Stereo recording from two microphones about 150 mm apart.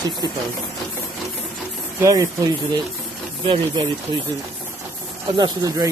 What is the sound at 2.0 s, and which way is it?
Speech, 20° right (ahead or behind).